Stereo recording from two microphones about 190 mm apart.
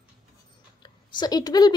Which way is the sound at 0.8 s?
25° left (ahead or behind).